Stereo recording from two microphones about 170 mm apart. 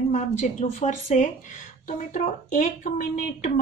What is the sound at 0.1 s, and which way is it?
A woman's voice, 40° left (ahead or behind).